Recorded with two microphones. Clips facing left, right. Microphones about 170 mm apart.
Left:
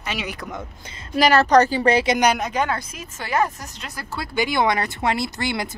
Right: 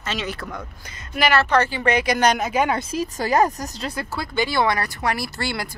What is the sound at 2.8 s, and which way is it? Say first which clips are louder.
Speech: right 10 dB; 35° right (ahead or behind).